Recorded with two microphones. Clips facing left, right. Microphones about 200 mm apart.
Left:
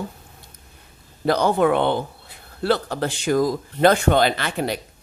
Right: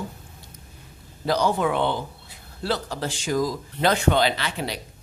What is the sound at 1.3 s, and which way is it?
A woman's voice, 55° left (ahead or behind).